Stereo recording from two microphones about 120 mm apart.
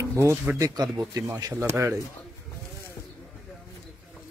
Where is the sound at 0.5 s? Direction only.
30° right (ahead or behind).